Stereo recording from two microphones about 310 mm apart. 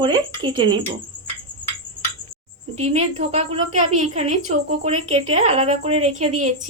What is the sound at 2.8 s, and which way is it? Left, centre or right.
A woman's voice, centre.